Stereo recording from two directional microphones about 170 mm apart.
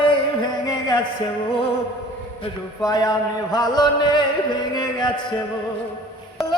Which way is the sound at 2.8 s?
25° left (ahead or behind).